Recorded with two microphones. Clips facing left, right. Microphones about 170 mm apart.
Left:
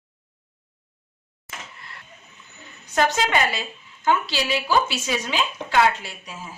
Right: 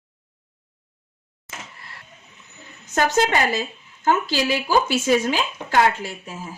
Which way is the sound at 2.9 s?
45° right (ahead or behind).